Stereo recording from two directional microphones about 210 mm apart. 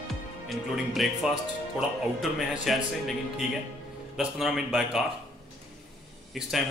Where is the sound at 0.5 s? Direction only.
Centre (ahead or behind).